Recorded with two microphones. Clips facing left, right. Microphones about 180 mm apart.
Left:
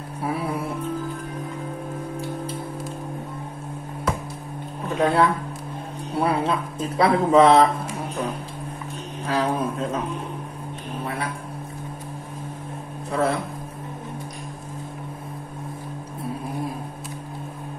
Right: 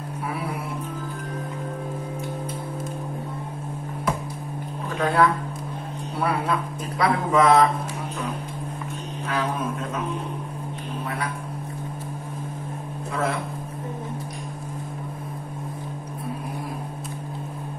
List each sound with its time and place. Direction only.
4.9 s speech: 25° left (ahead or behind)
9.3 s speech: 35° left (ahead or behind)
13.1 s speech: 35° left (ahead or behind)